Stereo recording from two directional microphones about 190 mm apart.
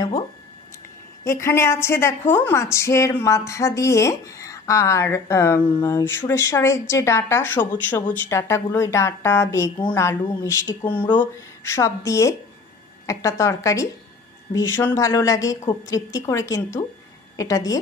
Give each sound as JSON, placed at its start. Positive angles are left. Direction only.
{"t": 1.2, "sound": "a woman's voice", "side_deg": 15}